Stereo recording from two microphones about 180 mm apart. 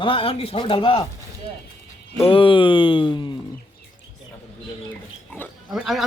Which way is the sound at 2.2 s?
30° left (ahead or behind).